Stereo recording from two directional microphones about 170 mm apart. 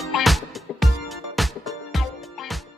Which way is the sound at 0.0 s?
Centre (ahead or behind).